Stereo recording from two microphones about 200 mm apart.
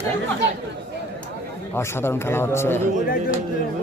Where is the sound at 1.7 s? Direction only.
10° left (ahead or behind).